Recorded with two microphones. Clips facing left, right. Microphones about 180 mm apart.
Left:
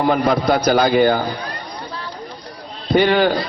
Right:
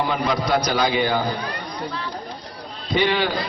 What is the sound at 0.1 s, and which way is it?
A man's voice, 55° left (ahead or behind).